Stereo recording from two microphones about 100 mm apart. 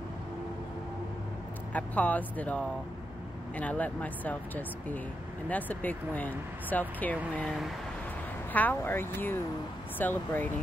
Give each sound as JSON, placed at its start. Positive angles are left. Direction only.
{"t": 1.7, "sound": "speech", "side_deg": 15}
{"t": 7.4, "sound": "speech", "side_deg": 0}
{"t": 8.5, "sound": "speech", "side_deg": 20}